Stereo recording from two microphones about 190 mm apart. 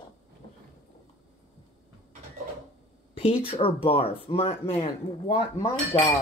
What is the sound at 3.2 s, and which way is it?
Speech, 30° left (ahead or behind).